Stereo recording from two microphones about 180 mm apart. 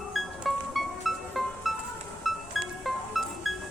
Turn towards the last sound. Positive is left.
turn(degrees=0)  # may be behind; listen again after turning